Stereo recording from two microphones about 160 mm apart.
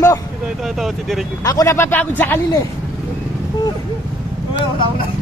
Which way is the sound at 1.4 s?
20° left (ahead or behind).